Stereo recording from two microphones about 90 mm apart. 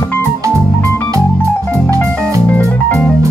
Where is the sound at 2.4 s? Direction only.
25° left (ahead or behind).